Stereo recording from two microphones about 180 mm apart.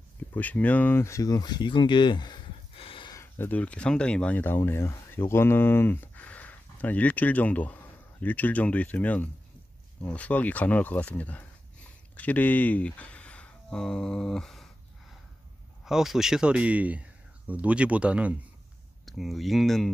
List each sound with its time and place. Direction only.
0.3 s speech: 10° left (ahead or behind); by 3.2 s 30° left (ahead or behind)
3.2 s speech: 10° left (ahead or behind)
15.8 s speech: centre (ahead or behind)